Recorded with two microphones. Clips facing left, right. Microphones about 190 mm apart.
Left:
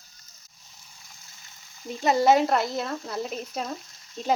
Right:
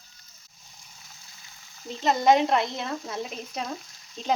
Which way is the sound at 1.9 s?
10° left (ahead or behind).